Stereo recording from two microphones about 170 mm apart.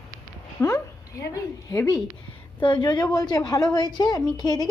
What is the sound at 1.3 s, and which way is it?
A woman's voice, 20° left (ahead or behind).